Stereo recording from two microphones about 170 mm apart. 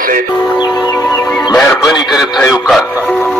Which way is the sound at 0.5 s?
25° left (ahead or behind).